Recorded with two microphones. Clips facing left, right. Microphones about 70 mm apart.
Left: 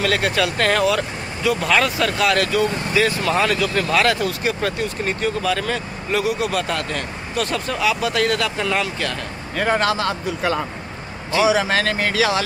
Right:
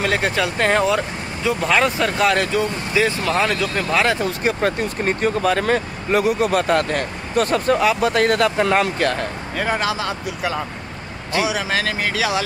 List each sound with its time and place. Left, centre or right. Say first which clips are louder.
0.0 s speech: even; right
1.9 s speech: right 1 dB; right
4.5 s speech: right 5 dB; right
9.6 s speech: left 3 dB; centre